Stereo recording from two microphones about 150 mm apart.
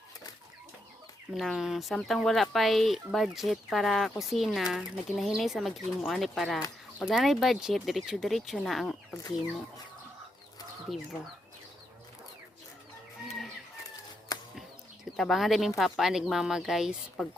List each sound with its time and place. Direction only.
1.3 s speech: centre (ahead or behind)
10.9 s speech: centre (ahead or behind)
14.3 s a sound: 25° left (ahead or behind)
15.1 s speech: centre (ahead or behind)